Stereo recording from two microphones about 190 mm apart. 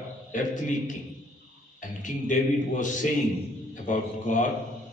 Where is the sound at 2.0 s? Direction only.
45° left (ahead or behind).